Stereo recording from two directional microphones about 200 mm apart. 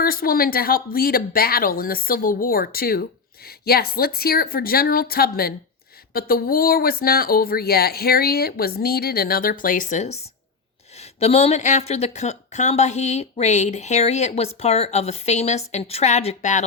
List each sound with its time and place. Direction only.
0.0 s speech: 45° left (ahead or behind)